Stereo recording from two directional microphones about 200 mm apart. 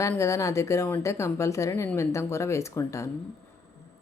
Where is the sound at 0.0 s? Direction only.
15° left (ahead or behind).